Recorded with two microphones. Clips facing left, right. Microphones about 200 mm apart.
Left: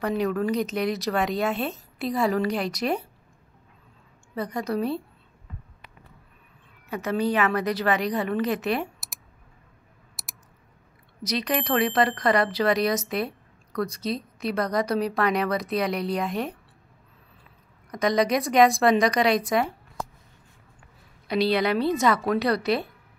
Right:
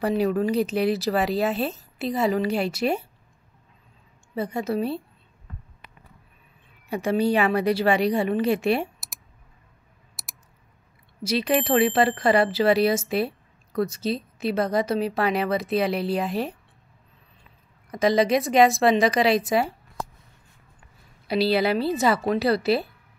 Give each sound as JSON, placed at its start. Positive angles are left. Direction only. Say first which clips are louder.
{"t": 0.0, "sound": "speech", "louder": "right 3 dB", "side_deg": -30}
{"t": 1.1, "sound": "speech", "louder": "right 2 dB", "side_deg": -5}
{"t": 1.4, "sound": "a woman's voice", "louder": "right 2 dB", "side_deg": -30}
{"t": 4.4, "sound": "speech", "louder": "right 1 dB", "side_deg": -25}
{"t": 6.9, "sound": "speech", "louder": "right 3 dB", "side_deg": -30}
{"t": 10.2, "sound": "typing", "louder": "even", "side_deg": 0}
{"t": 11.2, "sound": "speech", "louder": "right 4 dB", "side_deg": -30}
{"t": 18.0, "sound": "speech", "louder": "right 2 dB", "side_deg": -30}
{"t": 21.5, "sound": "speech", "louder": "right 2 dB", "side_deg": -30}
{"t": 21.7, "sound": "speech", "louder": "left 1 dB", "side_deg": -5}
{"t": 22.0, "sound": "speech", "louder": "right 1 dB", "side_deg": -30}